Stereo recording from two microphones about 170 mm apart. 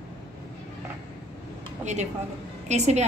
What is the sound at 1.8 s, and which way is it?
A woman's voice, 45° right (ahead or behind).